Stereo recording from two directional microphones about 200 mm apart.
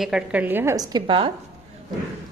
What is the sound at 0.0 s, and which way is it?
A woman's voice, 5° right (ahead or behind).